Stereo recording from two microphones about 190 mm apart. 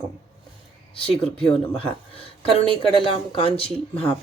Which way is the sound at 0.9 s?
30° left (ahead or behind).